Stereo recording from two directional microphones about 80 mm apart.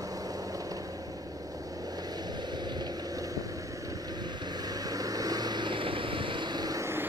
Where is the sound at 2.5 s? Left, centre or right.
Right.